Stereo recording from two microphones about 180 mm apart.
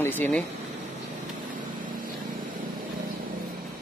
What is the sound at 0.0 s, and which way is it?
Speech, 10° left (ahead or behind).